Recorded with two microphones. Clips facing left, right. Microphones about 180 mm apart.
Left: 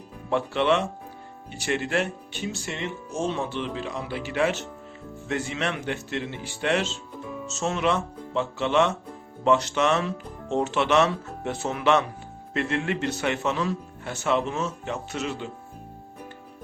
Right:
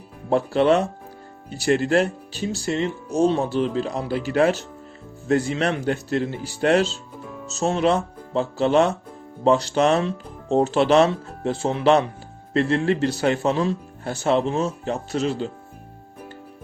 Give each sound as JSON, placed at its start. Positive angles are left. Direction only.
{"t": 0.3, "sound": "speech", "side_deg": -40}